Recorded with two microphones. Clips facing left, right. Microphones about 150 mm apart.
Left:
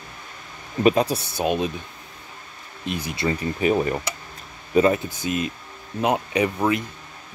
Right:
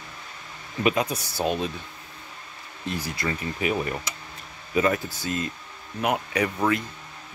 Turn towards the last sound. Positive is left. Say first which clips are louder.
# left 3 dB
turn(degrees=20)  # may be behind; listen again after turning